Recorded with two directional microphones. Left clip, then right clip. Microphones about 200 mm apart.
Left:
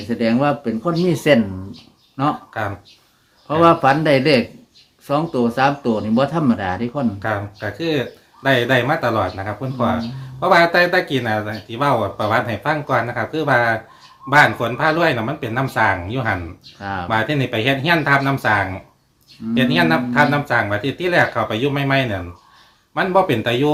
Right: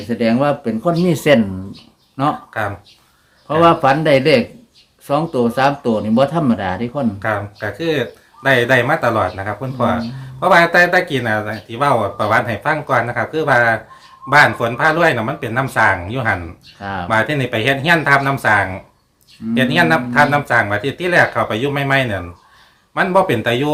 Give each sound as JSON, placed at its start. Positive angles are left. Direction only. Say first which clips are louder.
{"t": 0.1, "sound": "speech", "louder": "right 2 dB", "side_deg": -10}